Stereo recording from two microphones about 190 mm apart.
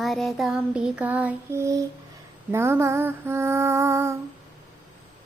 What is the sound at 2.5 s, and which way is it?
Speech, 10° right (ahead or behind).